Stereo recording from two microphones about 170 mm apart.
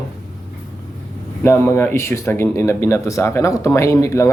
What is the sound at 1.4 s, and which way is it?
Speech, 15° left (ahead or behind).